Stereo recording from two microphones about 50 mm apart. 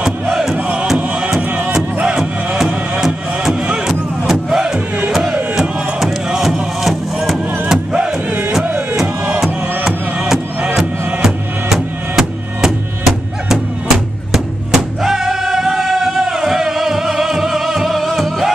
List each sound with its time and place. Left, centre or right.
0.0 s music: centre
2.1 s music: centre
4.3 s crowd: centre
5.3 s music: centre
7.6 s crowd: centre
9.8 s music: centre